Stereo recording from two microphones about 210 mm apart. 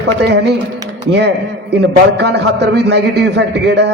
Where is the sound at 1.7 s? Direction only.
55° right (ahead or behind).